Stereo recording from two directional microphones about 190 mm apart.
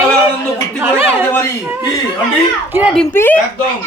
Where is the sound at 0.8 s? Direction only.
15° right (ahead or behind).